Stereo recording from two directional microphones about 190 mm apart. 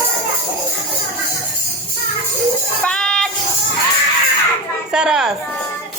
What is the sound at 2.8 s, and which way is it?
Speech, 5° left (ahead or behind).